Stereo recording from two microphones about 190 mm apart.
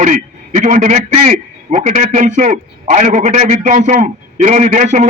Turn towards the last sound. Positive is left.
turn(degrees=-40)  # may be behind; listen again after turning